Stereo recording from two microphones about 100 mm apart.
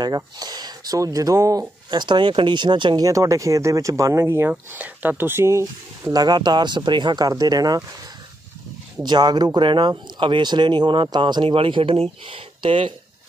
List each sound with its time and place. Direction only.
0.0 s speech: 40° right (ahead or behind)
3.0 s speech: 35° right (ahead or behind)
6.1 s speech: 45° right (ahead or behind)
9.0 s speech: 45° right (ahead or behind)
11.4 s speech: 65° right (ahead or behind)